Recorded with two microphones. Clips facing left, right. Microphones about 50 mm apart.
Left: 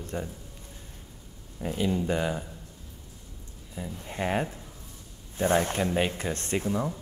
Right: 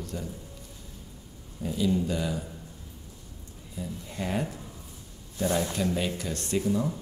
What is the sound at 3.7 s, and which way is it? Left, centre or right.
Speech, left.